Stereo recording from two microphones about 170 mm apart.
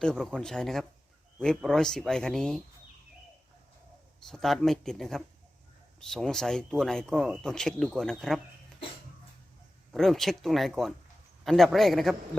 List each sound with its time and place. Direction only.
0.0 s speech: centre (ahead or behind)
4.3 s speech: centre (ahead or behind)
9.9 s speech: centre (ahead or behind)